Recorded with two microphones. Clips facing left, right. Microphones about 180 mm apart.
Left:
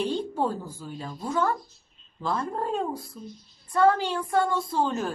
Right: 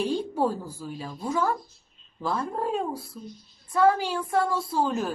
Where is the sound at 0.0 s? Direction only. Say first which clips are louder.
Right 1 dB; 10° right (ahead or behind).